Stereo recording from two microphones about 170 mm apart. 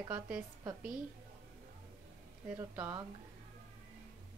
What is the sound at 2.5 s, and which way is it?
Speech, 15° right (ahead or behind).